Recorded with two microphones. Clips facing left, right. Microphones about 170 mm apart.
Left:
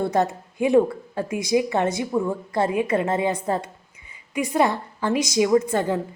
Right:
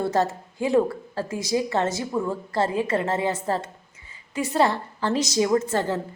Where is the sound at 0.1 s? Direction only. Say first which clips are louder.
Left 1 dB; 15° left (ahead or behind).